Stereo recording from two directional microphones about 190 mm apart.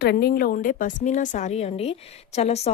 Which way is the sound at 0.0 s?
55° left (ahead or behind).